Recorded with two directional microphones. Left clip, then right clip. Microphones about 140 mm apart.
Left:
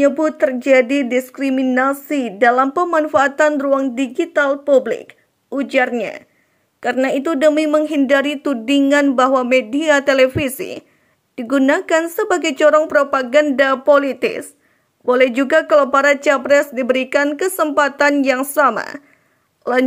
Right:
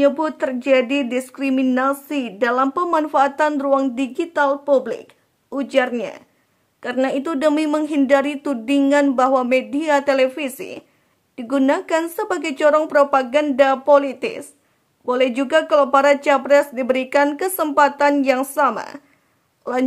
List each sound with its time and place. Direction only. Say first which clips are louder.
0.0 s a woman's voice: left 3 dB; 15° left (ahead or behind)